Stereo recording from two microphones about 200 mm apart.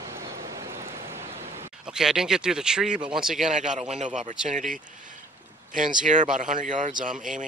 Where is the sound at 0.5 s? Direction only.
15° right (ahead or behind).